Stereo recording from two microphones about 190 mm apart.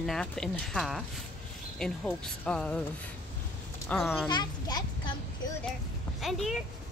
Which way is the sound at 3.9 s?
10° left (ahead or behind).